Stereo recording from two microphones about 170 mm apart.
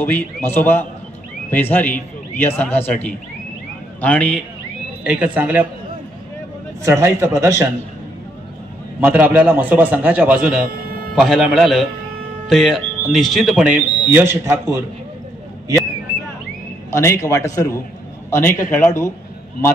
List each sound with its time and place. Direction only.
0.5 s a man's voice: 10° left (ahead or behind)
5.0 s a man's voice: 10° right (ahead or behind)
6.8 s a man's voice: 15° right (ahead or behind)
9.0 s a man's voice: 10° right (ahead or behind)
16.9 s a man's voice: 15° left (ahead or behind)